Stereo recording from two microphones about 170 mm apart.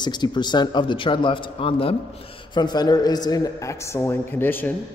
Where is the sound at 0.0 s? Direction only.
25° left (ahead or behind).